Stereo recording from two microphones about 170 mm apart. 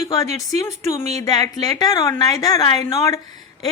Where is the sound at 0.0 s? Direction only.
20° left (ahead or behind).